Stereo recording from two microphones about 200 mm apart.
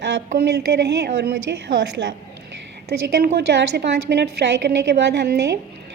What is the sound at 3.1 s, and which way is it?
A woman's voice, 55° right (ahead or behind).